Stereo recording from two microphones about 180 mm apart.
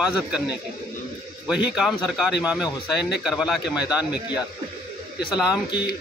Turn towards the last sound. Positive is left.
turn(degrees=-5)  # may be behind; listen again after turning